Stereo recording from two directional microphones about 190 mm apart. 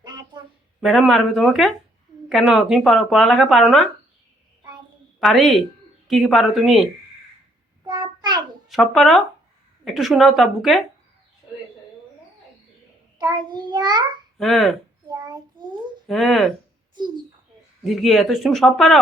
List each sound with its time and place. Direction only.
0.0 s a sound: 20° right (ahead or behind)
0.8 s speech: centre (ahead or behind)
5.2 s speech: centre (ahead or behind)
7.9 s child singing: 20° right (ahead or behind)
8.6 s speech: centre (ahead or behind)
13.1 s a child's voice: 20° right (ahead or behind)
14.3 s speech: centre (ahead or behind)
15.1 s child singing: 20° right (ahead or behind)
16.0 s speech: centre (ahead or behind)
17.8 s speech: centre (ahead or behind)